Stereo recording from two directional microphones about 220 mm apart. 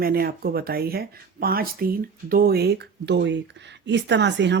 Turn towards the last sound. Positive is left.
turn(degrees=-50)  # may be behind; listen again after turning